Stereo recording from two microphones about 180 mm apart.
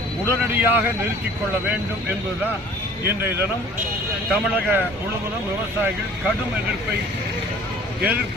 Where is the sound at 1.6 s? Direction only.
10° right (ahead or behind).